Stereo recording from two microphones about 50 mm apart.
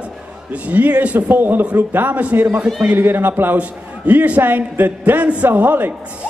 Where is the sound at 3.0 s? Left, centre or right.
Right.